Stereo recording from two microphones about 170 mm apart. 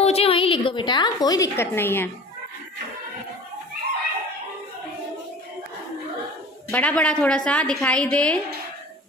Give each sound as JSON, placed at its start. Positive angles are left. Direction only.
{"t": 0.0, "sound": "a woman's voice", "side_deg": 35}
{"t": 6.7, "sound": "a woman's voice", "side_deg": 10}